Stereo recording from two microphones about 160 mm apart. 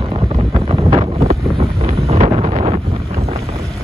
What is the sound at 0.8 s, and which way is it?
Wind noise, 40° right (ahead or behind).